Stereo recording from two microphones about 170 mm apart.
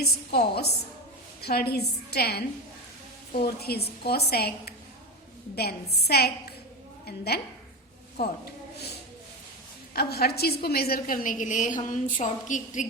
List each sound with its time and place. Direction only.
0.0 s a woman's voice: 70° left (ahead or behind)
3.4 s a woman's voice: 65° left (ahead or behind)
9.9 s a woman's voice: 65° left (ahead or behind); by 12.9 s 50° left (ahead or behind)